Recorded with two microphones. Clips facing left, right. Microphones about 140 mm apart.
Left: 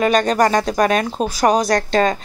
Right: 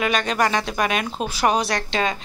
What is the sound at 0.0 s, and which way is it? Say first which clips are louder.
Speech: left 6 dB; 40° left (ahead or behind).